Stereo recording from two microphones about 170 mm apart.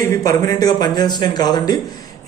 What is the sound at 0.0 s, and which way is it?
A man's voice, 20° left (ahead or behind).